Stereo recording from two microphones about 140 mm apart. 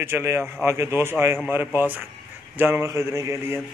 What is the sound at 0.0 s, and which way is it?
Speech, 20° right (ahead or behind).